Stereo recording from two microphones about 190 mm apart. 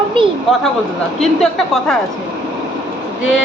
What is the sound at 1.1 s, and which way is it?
Speech, centre (ahead or behind).